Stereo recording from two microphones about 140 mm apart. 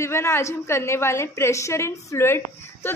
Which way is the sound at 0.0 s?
20° left (ahead or behind).